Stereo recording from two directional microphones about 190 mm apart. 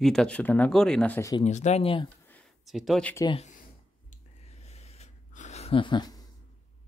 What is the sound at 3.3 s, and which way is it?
Speech, 30° left (ahead or behind).